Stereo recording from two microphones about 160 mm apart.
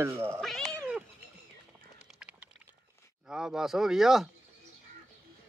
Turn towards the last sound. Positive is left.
turn(degrees=0)  # may be behind; listen again after turning